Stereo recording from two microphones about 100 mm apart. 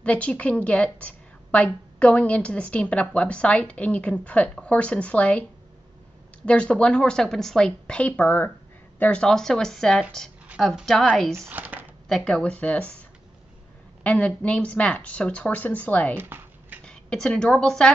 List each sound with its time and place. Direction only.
0.0 s a woman's voice: 15° left (ahead or behind)
6.4 s a woman's voice: 10° left (ahead or behind)
11.3 s speech: 20° right (ahead or behind)
12.1 s a woman's voice: 5° left (ahead or behind)
14.0 s a woman's voice: 15° left (ahead or behind)
16.2 s a sound: 20° right (ahead or behind)
16.8 s a woman's voice: 10° left (ahead or behind)